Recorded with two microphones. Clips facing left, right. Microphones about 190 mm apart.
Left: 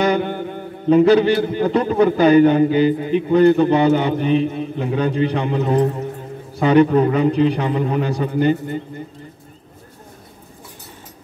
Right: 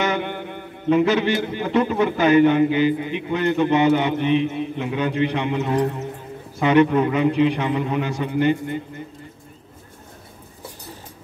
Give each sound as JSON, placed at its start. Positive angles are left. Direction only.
{"t": 0.0, "sound": "a man's voice", "side_deg": 35}